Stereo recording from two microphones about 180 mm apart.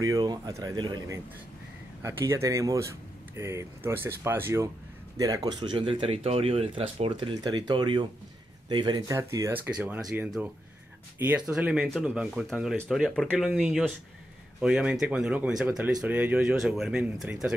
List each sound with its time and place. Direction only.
0.0 s speech: 20° right (ahead or behind); by 17.5 s 5° right (ahead or behind)